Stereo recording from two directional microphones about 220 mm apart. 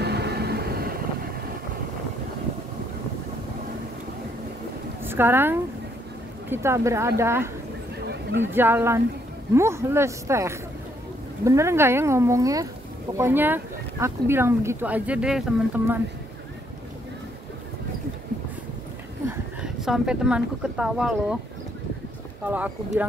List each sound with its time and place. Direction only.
0.0 s vehicle: 50° right (ahead or behind)
5.0 s speech: 10° right (ahead or behind)
8.0 s a sound: 50° right (ahead or behind)
8.5 s speech: 10° right (ahead or behind)
19.2 s a woman's voice: centre (ahead or behind)
22.4 s speech: 5° right (ahead or behind)